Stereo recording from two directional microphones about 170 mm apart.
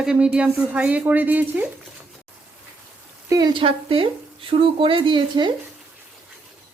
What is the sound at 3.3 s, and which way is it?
Speech, 25° right (ahead or behind).